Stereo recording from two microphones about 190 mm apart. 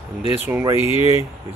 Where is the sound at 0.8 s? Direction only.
30° left (ahead or behind).